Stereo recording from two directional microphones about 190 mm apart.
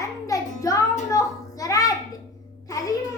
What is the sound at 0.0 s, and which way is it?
Music, 15° left (ahead or behind).